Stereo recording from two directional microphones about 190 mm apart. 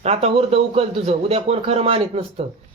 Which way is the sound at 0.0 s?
35° right (ahead or behind).